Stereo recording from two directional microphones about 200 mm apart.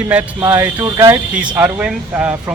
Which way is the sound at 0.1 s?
10° right (ahead or behind).